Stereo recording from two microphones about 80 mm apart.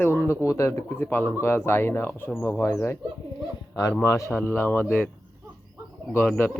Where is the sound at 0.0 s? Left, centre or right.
Left.